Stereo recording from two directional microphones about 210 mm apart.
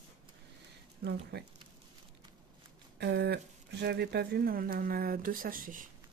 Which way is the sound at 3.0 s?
50° right (ahead or behind).